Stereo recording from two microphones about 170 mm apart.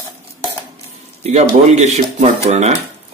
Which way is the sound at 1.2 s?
40° right (ahead or behind).